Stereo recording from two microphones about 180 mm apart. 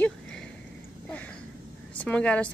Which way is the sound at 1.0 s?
10° left (ahead or behind).